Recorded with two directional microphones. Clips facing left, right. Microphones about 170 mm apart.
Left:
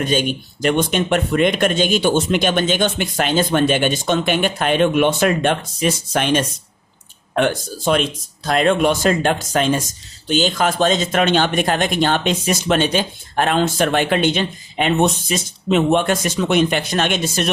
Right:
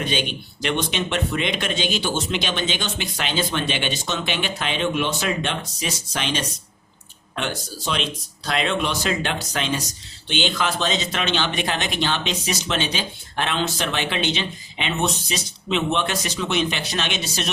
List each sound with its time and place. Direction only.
0.0 s speech: 45° left (ahead or behind)